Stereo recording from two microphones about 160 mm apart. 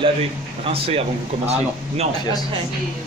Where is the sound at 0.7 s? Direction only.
35° right (ahead or behind).